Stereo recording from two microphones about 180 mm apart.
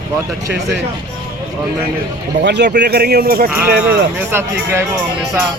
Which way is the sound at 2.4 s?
70° right (ahead or behind).